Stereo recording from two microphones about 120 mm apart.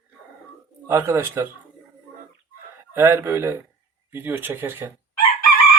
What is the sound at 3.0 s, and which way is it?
A man's voice, 20° right (ahead or behind).